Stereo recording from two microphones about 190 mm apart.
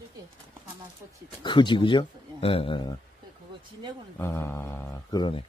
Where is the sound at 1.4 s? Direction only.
25° left (ahead or behind).